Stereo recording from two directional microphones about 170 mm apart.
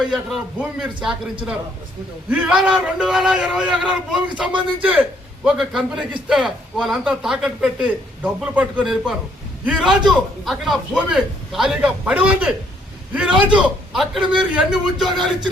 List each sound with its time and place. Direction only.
0.0 s a man's voice: centre (ahead or behind)
2.3 s a man's voice: 5° right (ahead or behind)